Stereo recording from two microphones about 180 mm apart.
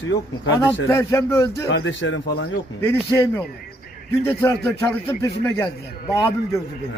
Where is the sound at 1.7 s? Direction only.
90° left.